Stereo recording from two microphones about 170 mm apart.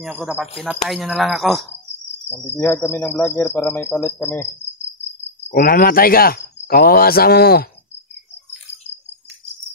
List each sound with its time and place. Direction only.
0.0 s speech: centre (ahead or behind)
2.2 s speech: 10° left (ahead or behind)
5.5 s speech: 55° left (ahead or behind)